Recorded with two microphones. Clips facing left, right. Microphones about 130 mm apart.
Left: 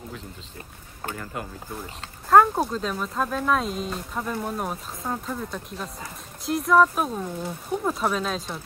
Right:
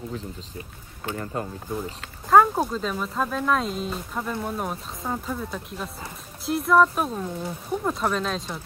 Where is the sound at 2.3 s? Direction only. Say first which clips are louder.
Even; centre (ahead or behind).